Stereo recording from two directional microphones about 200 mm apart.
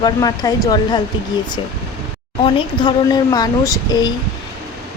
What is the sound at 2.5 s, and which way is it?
Speech, 25° left (ahead or behind).